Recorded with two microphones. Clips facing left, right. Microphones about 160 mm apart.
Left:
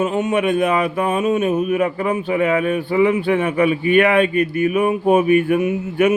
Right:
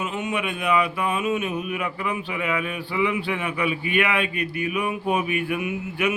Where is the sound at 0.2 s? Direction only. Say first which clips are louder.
Left 10 dB; 45° left (ahead or behind).